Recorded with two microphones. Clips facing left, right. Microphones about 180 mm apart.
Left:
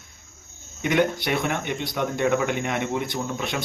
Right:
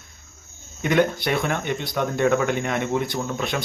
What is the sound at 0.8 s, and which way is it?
Speech, 15° left (ahead or behind).